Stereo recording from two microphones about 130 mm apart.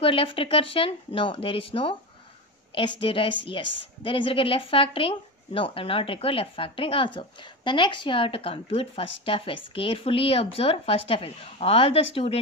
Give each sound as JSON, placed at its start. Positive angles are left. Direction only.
{"t": 0.0, "sound": "a woman's voice", "side_deg": 45}